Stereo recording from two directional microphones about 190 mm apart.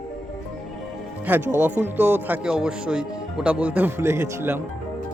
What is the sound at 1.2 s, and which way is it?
Speech, 10° right (ahead or behind).